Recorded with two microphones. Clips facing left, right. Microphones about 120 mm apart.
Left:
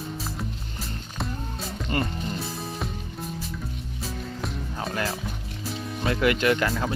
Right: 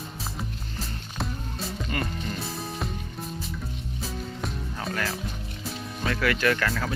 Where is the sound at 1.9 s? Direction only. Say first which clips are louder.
Left 5 dB; 25° left (ahead or behind).